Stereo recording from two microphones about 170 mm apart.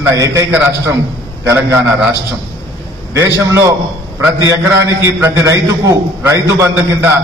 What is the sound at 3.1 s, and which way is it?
A man's voice, 20° right (ahead or behind).